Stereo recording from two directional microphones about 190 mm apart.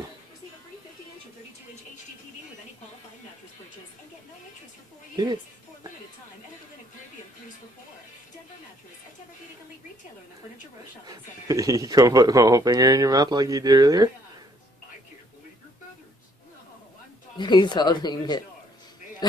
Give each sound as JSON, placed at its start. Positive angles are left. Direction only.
{"t": 5.1, "sound": "a woman's voice", "side_deg": -25}
{"t": 11.1, "sound": "speech", "side_deg": -15}
{"t": 17.4, "sound": "speech", "side_deg": 25}